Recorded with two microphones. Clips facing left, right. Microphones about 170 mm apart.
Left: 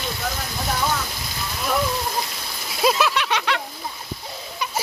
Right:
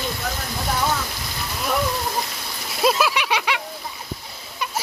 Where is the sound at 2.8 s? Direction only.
Centre (ahead or behind).